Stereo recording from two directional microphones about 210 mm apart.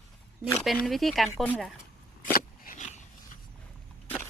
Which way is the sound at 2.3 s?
40° left (ahead or behind).